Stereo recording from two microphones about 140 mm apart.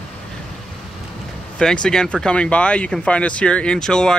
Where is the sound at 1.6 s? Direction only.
5° left (ahead or behind).